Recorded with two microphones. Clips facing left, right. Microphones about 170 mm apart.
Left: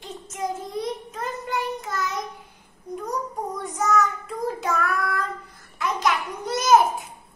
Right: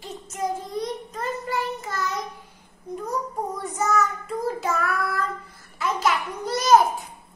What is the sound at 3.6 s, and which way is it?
Child singing, centre (ahead or behind).